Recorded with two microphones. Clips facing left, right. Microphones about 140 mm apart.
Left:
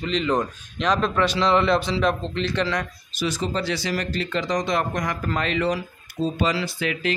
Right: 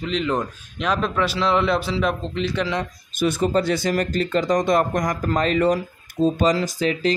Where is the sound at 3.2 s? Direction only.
50° right (ahead or behind).